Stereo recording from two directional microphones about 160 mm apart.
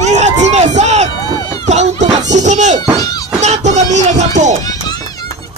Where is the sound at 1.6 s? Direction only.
45° right (ahead or behind).